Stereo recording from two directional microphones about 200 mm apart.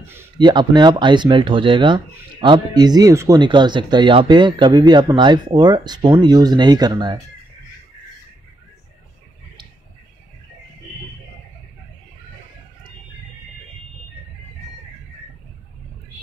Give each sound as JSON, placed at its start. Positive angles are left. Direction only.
{"t": 0.4, "sound": "speech", "side_deg": -20}